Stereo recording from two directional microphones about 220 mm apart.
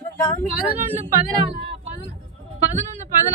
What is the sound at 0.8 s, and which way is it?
Speech, 30° right (ahead or behind).